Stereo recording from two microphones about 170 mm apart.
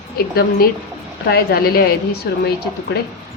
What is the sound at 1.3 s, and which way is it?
Speech, 65° left (ahead or behind).